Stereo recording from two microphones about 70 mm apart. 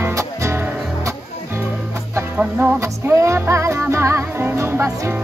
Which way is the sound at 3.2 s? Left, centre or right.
Right.